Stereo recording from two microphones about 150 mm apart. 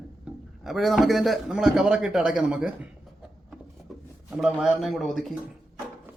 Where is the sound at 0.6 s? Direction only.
Centre (ahead or behind).